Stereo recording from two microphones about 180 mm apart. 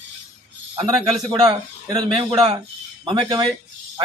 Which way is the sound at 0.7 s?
20° right (ahead or behind).